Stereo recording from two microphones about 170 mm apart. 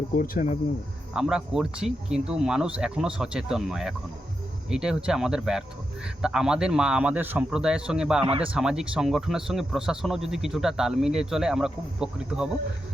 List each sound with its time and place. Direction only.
0.1 s speech: 55° left (ahead or behind)
1.1 s a man's voice: 5° right (ahead or behind)
8.2 s speech: 35° right (ahead or behind)
8.5 s a man's voice: 5° right (ahead or behind)